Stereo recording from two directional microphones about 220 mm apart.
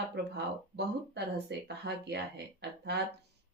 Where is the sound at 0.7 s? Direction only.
50° right (ahead or behind).